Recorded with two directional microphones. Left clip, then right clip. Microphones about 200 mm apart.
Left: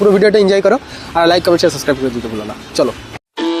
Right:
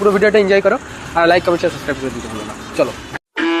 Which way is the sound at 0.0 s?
75° left (ahead or behind).